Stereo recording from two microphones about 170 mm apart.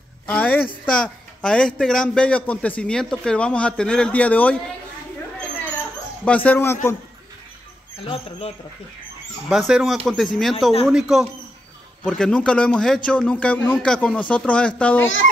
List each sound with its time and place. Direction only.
0.3 s a man's voice: 10° left (ahead or behind)
6.2 s a man's voice: 10° left (ahead or behind)
8.0 s speech: 35° left (ahead or behind)
9.5 s a man's voice: centre (ahead or behind)